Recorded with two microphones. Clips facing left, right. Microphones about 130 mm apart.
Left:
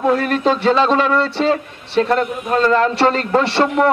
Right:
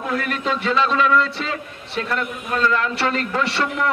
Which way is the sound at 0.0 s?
35° left (ahead or behind).